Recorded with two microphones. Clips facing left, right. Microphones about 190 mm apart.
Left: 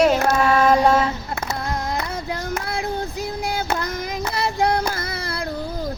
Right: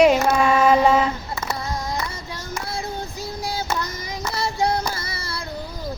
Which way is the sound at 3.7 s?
60° left (ahead or behind).